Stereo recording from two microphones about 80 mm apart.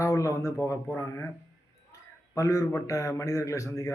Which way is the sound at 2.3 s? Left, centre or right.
Left.